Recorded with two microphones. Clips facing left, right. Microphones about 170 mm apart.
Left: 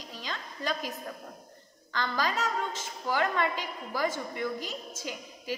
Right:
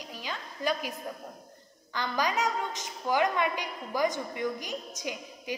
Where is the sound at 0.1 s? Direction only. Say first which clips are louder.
Left 1 dB; 10° right (ahead or behind).